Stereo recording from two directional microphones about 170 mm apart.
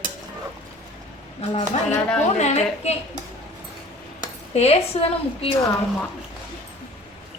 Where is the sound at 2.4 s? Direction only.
40° left (ahead or behind).